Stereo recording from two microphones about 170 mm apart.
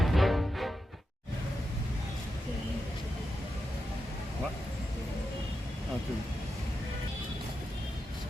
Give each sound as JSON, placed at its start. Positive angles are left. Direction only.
{"t": 0.0, "sound": "music", "side_deg": 0}